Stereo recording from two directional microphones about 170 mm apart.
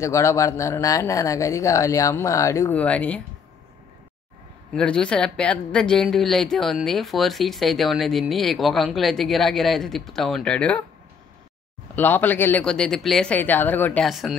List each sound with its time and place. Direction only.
0.0 s speech: 15° left (ahead or behind)
4.7 s speech: 5° left (ahead or behind)
11.9 s speech: 10° left (ahead or behind)
14.0 s speech: centre (ahead or behind)